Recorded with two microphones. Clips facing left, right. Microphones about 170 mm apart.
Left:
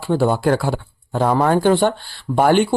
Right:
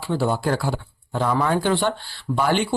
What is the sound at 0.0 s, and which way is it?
Speech, 55° left (ahead or behind).